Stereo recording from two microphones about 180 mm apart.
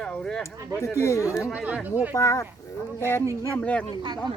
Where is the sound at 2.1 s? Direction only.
15° left (ahead or behind).